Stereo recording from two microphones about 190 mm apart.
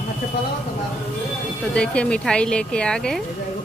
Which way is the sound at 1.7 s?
5° left (ahead or behind).